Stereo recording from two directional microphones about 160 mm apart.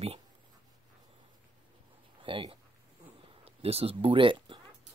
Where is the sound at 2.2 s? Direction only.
35° right (ahead or behind).